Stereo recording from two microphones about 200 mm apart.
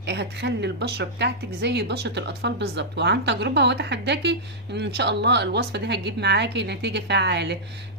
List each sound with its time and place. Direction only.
0.0 s a woman's voice: 60° right (ahead or behind)